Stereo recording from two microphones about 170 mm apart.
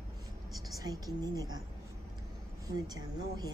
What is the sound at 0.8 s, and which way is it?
Speech, 20° right (ahead or behind).